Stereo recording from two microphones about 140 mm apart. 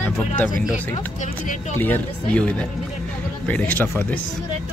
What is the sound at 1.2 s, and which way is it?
Speech, 60° left (ahead or behind).